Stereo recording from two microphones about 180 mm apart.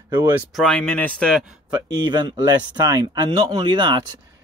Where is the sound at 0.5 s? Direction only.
5° left (ahead or behind).